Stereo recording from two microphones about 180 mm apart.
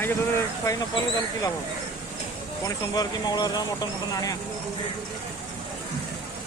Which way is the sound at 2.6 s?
20° left (ahead or behind).